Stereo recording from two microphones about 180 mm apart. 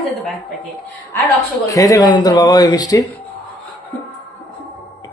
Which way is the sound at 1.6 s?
20° left (ahead or behind).